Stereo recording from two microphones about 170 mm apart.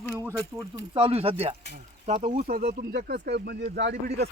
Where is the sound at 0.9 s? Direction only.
30° right (ahead or behind).